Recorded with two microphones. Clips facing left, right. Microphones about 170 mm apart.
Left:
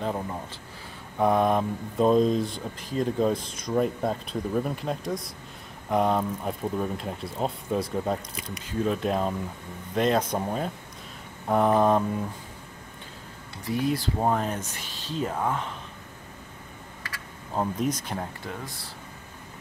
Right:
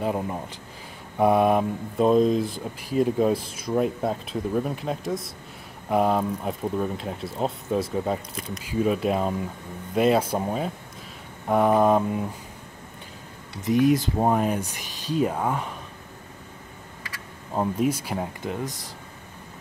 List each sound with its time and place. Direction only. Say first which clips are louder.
0.0 s speech: right 3 dB; 10° right (ahead or behind)
13.7 s speech: right 7 dB; 20° right (ahead or behind)
17.6 s speech: right 3 dB; 10° right (ahead or behind)
18.4 s speech: right 7 dB; 20° right (ahead or behind)